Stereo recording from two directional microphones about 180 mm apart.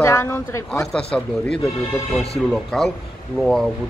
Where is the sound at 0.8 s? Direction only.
5° left (ahead or behind).